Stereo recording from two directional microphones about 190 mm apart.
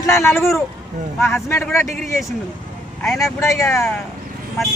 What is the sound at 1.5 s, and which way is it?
Speech, 15° left (ahead or behind).